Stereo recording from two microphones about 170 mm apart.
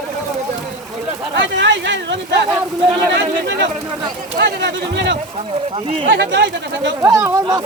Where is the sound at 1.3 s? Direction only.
90° right.